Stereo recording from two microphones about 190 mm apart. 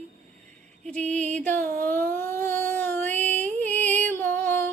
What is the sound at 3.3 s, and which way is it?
Music, 10° left (ahead or behind).